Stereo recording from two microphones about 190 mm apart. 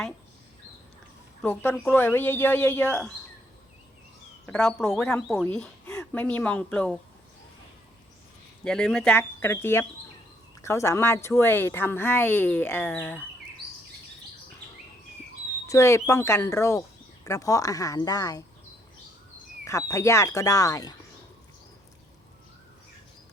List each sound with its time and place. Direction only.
1.4 s speech: 10° left (ahead or behind)
4.4 s a woman's voice: 5° left (ahead or behind)
8.6 s speech: 5° left (ahead or behind)
15.6 s speech: 15° left (ahead or behind)
19.6 s speech: 15° left (ahead or behind)